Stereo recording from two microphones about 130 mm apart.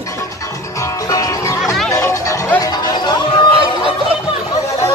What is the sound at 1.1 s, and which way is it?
Music, 25° left (ahead or behind).